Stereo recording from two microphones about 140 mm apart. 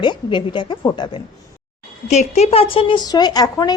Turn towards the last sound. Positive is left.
turn(degrees=30)  # may be behind; listen again after turning